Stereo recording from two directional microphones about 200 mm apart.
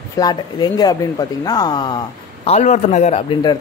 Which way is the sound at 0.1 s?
20° left (ahead or behind).